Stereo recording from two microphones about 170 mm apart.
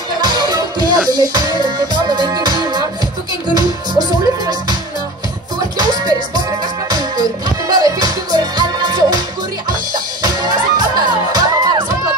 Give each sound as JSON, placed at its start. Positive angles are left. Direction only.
{"t": 0.2, "sound": "music", "side_deg": -25}
{"t": 5.8, "sound": "music", "side_deg": -25}
{"t": 10.2, "sound": "music", "side_deg": -25}